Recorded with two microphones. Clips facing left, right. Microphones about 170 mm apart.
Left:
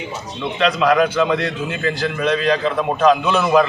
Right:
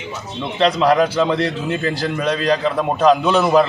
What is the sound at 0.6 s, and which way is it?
A man's voice, 35° right (ahead or behind).